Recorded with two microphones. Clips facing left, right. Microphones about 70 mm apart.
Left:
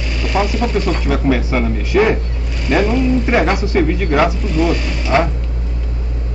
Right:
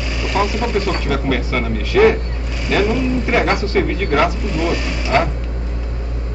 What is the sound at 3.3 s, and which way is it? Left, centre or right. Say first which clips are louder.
Speech: left 1 dB; centre.